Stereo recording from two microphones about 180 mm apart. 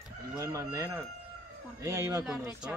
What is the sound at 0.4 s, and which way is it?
Speech, 20° right (ahead or behind).